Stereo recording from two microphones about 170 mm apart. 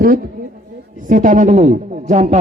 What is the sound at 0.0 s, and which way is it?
A man's voice, 60° right (ahead or behind).